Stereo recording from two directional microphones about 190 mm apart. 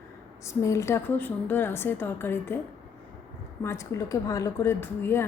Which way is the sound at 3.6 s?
15° left (ahead or behind).